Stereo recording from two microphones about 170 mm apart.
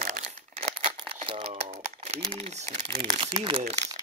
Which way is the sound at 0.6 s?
35° right (ahead or behind).